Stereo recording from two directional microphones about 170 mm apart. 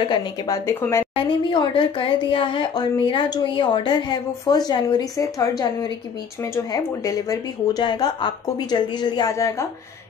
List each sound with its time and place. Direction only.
0.1 s a woman's voice: 20° left (ahead or behind)
1.1 s speech: 30° left (ahead or behind)